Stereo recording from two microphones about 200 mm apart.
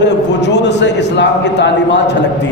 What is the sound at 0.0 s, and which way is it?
A man's voice, 60° left (ahead or behind).